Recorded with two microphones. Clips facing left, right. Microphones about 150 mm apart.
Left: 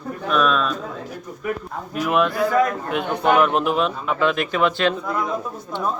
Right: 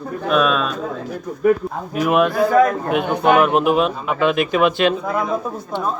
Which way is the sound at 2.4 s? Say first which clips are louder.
Right 4 dB; 35° right (ahead or behind).